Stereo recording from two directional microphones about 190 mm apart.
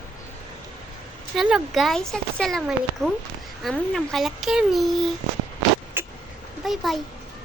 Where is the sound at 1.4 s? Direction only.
Centre (ahead or behind).